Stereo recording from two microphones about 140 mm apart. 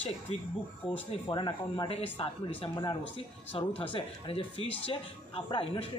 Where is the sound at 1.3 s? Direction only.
35° left (ahead or behind).